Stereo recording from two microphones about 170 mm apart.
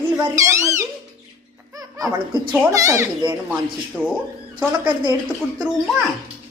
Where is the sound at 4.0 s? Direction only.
10° left (ahead or behind).